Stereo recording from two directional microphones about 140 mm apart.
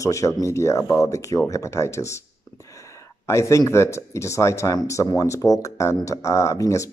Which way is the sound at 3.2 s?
20° left (ahead or behind).